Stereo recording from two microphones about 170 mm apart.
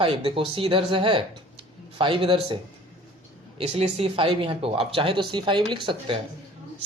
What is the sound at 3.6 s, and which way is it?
Speech, 35° right (ahead or behind).